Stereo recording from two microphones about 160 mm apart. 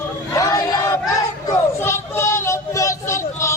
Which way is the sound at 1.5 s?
15° left (ahead or behind).